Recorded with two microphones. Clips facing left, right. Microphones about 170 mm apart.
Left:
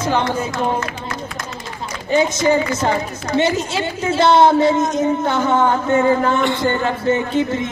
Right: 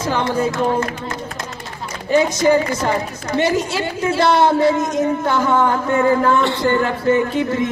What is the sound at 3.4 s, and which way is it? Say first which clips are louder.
Speech: right 1 dB; 25° left (ahead or behind).